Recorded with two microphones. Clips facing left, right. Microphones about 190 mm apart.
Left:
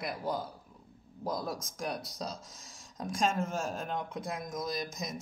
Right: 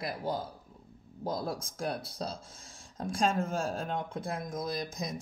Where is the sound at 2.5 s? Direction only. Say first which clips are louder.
Right 1 dB; 55° right (ahead or behind).